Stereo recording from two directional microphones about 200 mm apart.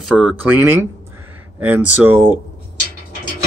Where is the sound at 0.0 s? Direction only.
5° right (ahead or behind).